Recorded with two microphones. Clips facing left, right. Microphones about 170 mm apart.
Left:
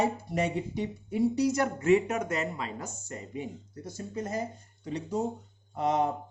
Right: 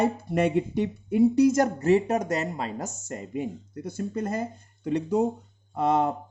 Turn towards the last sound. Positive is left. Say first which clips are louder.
# right 4 dB
turn(degrees=-60)  # may be behind; listen again after turning